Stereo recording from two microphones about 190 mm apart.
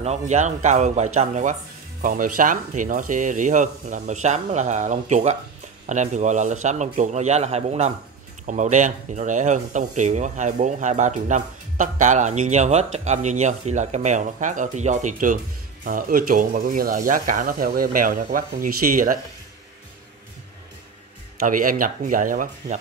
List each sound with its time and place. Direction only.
0.0 s speech: 35° right (ahead or behind)
21.4 s speech: 45° right (ahead or behind)